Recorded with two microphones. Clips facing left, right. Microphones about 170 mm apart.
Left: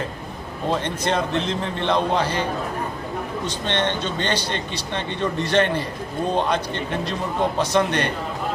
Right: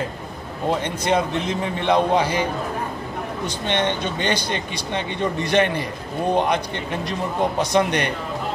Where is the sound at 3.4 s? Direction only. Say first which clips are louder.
Right 2 dB; 10° right (ahead or behind).